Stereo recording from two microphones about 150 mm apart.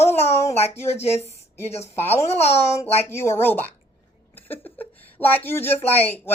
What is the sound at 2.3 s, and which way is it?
Speech, 45° left (ahead or behind).